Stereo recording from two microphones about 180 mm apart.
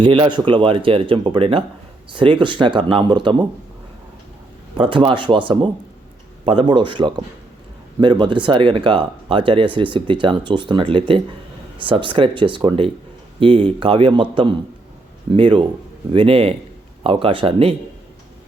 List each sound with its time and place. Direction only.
0.0 s speech: 25° right (ahead or behind)
4.8 s speech: 30° right (ahead or behind)